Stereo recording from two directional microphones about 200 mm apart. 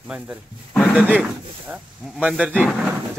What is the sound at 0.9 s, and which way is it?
Speech, 5° right (ahead or behind).